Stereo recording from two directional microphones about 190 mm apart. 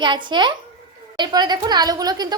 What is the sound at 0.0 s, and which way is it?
A woman's voice, 25° right (ahead or behind).